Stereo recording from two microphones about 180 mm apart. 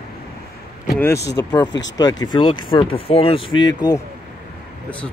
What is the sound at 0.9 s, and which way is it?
Speech, 15° left (ahead or behind).